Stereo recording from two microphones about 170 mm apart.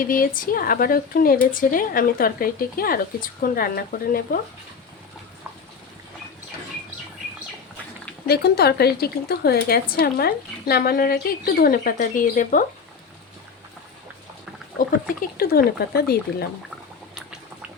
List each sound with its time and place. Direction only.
0.1 s a woman's voice: 55° left (ahead or behind)
8.3 s a woman's voice: 70° left (ahead or behind); by 12.6 s 50° left (ahead or behind)
15.4 s a woman's voice: 65° left (ahead or behind)